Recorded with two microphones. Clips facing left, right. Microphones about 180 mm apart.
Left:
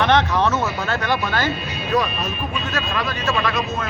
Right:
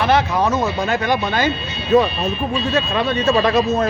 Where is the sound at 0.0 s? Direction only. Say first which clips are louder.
Right 1 dB; 10° right (ahead or behind).